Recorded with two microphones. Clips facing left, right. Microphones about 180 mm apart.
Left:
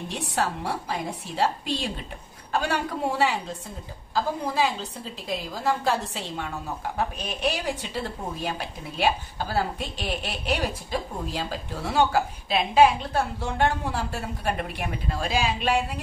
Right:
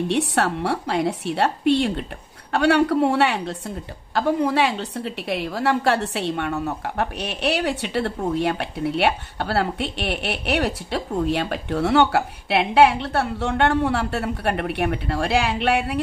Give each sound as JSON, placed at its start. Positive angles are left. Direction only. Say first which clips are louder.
{"t": 0.1, "sound": "a woman's voice", "louder": "right 3 dB", "side_deg": -70}